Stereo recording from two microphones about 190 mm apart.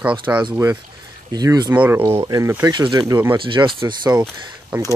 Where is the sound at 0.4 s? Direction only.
20° right (ahead or behind).